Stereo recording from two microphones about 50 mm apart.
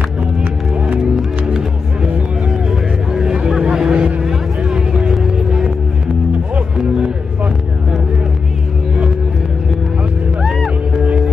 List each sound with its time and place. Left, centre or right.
3.1 s vehicle: centre
5.1 s music: centre